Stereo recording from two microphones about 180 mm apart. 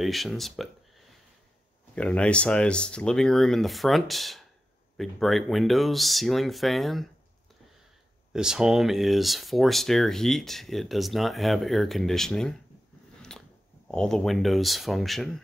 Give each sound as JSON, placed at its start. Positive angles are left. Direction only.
{"t": 0.0, "sound": "speech", "side_deg": 0}
{"t": 8.3, "sound": "speech", "side_deg": -5}
{"t": 13.8, "sound": "speech", "side_deg": 5}